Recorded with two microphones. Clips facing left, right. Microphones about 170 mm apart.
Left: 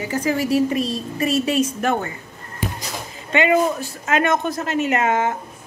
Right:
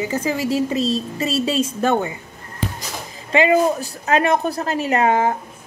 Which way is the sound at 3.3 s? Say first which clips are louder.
Right 2 dB; 30° right (ahead or behind).